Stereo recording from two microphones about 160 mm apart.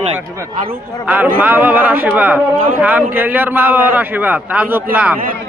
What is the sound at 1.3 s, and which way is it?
A man's voice, 10° right (ahead or behind).